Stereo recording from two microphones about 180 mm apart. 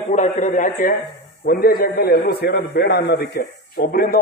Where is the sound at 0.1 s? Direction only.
45° left (ahead or behind).